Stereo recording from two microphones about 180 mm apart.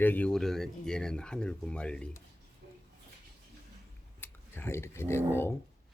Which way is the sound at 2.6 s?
65° right (ahead or behind).